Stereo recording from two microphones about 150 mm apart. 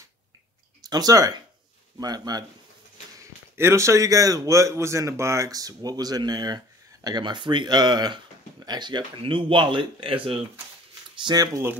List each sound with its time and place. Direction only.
0.8 s a man's voice: 25° right (ahead or behind)
11.2 s a man's voice: 25° right (ahead or behind)